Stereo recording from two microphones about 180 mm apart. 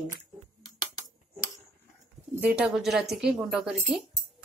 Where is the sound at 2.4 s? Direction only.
5° right (ahead or behind).